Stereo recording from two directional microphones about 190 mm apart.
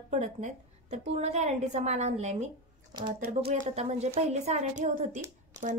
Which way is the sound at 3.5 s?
35° right (ahead or behind).